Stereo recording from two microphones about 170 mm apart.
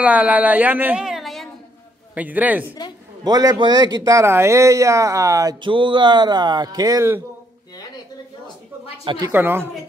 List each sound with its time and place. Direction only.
0.0 s a woman's voice: 10° right (ahead or behind)
2.1 s a man's voice: 10° right (ahead or behind)
3.3 s speech: 25° right (ahead or behind)
9.0 s speech: 25° right (ahead or behind)
9.3 s a man's voice: 10° right (ahead or behind)